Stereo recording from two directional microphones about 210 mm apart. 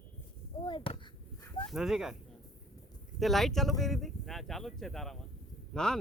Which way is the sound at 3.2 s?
Centre (ahead or behind).